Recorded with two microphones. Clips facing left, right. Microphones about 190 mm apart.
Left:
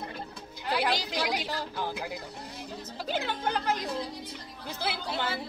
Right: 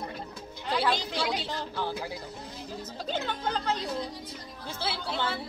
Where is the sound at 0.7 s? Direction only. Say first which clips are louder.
Right 1 dB; 10° left (ahead or behind).